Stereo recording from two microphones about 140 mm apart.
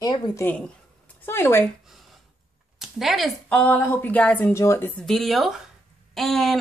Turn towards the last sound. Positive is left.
turn(degrees=0)  # may be behind; listen again after turning